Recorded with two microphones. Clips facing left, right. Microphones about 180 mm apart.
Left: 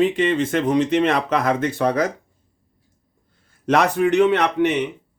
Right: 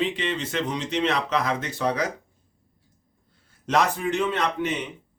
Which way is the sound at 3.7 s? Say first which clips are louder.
Left 6 dB; 65° left (ahead or behind).